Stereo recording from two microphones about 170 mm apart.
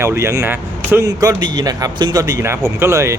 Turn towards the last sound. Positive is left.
turn(degrees=-15)  # may be behind; listen again after turning